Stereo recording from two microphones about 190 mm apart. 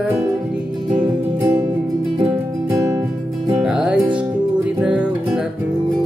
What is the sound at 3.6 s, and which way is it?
Music, 5° right (ahead or behind).